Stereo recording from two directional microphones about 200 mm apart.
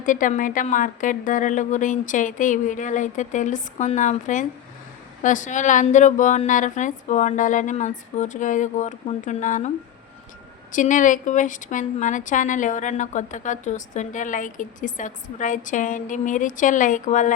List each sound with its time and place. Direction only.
0.0 s a woman's voice: 40° left (ahead or behind)